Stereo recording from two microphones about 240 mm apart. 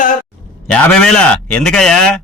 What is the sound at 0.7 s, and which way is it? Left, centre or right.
A man's voice, centre.